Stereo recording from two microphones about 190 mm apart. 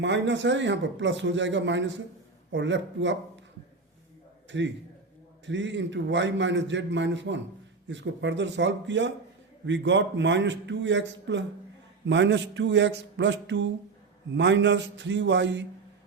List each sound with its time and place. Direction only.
0.0 s a man's voice: 70° right (ahead or behind)
4.5 s a man's voice: 70° right (ahead or behind)